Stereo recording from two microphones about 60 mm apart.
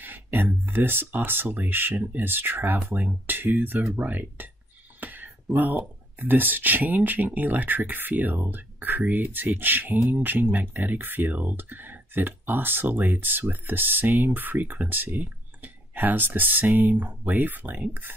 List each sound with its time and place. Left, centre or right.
0.0 s speech: right